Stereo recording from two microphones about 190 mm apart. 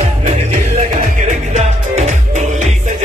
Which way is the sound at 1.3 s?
40° right (ahead or behind).